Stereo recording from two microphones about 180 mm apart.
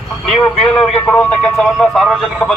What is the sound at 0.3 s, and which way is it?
A man's voice, 5° left (ahead or behind).